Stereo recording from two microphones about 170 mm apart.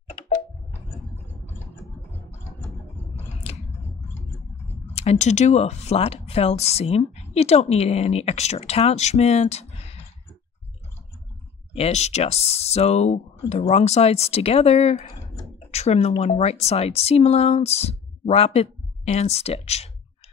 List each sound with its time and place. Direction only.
4.9 s speech: 40° left (ahead or behind)
11.7 s speech: 40° left (ahead or behind)